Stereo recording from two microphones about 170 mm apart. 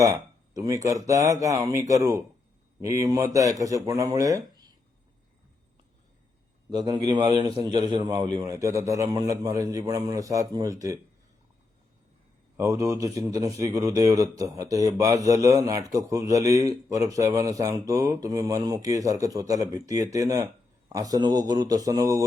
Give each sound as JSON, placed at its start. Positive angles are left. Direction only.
{"t": 0.0, "sound": "a man's voice", "side_deg": -20}
{"t": 6.7, "sound": "a man's voice", "side_deg": -25}
{"t": 12.5, "sound": "a man's voice", "side_deg": -20}